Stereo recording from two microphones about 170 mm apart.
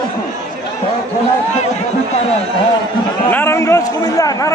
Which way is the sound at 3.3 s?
15° left (ahead or behind).